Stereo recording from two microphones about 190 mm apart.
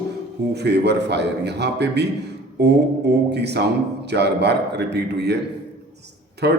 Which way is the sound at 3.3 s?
60° right (ahead or behind).